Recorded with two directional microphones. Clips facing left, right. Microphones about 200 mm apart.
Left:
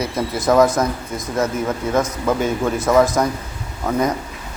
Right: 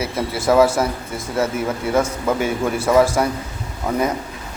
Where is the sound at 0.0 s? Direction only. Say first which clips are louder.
Left 1 dB; 5° right (ahead or behind).